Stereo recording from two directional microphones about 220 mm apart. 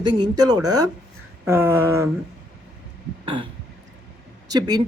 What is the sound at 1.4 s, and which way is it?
Speech, 10° right (ahead or behind).